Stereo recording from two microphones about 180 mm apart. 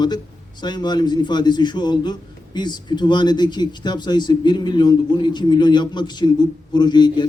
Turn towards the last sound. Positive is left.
turn(degrees=25)  # may be behind; listen again after turning